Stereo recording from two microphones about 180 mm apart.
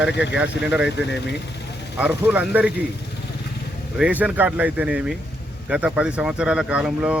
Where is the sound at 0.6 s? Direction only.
5° right (ahead or behind).